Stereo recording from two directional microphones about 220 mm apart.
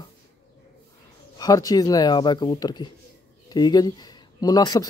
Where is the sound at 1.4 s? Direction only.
15° left (ahead or behind).